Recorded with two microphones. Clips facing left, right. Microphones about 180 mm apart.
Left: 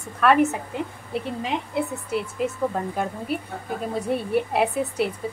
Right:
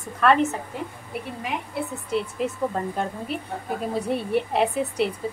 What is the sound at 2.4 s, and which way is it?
A woman's voice, 5° left (ahead or behind).